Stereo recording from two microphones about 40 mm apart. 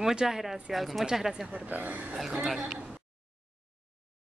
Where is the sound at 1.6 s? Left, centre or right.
Right.